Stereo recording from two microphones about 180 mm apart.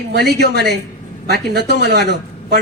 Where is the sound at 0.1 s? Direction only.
65° right (ahead or behind).